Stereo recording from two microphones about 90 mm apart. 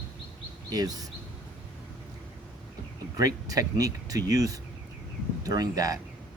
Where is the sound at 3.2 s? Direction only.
40° right (ahead or behind).